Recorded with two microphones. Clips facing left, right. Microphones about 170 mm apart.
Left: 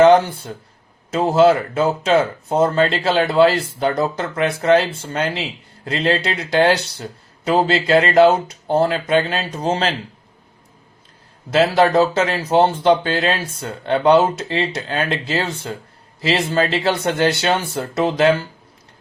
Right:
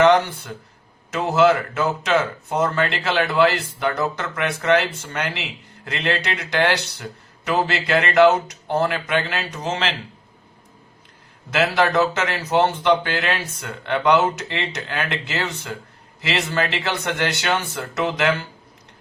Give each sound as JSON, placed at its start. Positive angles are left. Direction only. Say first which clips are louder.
{"t": 0.0, "sound": "speech", "louder": "left 4 dB", "side_deg": 30}
{"t": 11.5, "sound": "speech", "louder": "left 5 dB", "side_deg": 30}